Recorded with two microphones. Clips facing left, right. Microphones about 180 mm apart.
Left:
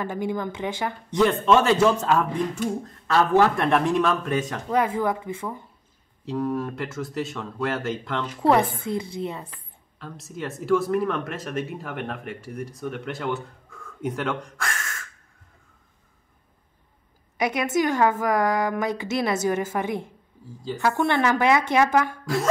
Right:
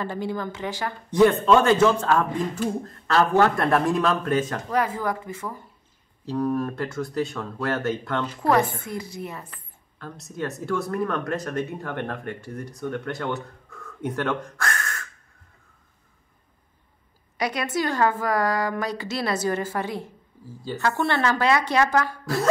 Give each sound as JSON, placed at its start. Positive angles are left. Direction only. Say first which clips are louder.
{"t": 0.0, "sound": "a woman's voice", "louder": "left 1 dB", "side_deg": 15}
{"t": 1.1, "sound": "speech", "louder": "right 2 dB", "side_deg": 0}
{"t": 4.3, "sound": "a woman's voice", "louder": "right 1 dB", "side_deg": 20}
{"t": 6.2, "sound": "speech", "louder": "right 2 dB", "side_deg": 0}
{"t": 8.4, "sound": "a woman's voice", "louder": "left 2 dB", "side_deg": 20}
{"t": 9.9, "sound": "a woman's voice", "louder": "right 2 dB", "side_deg": 0}
{"t": 17.4, "sound": "a woman's voice", "louder": "left 3 dB", "side_deg": 20}